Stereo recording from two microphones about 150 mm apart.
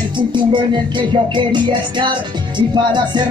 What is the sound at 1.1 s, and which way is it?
Music, 30° right (ahead or behind).